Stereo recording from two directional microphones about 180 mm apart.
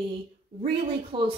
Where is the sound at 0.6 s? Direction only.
30° right (ahead or behind).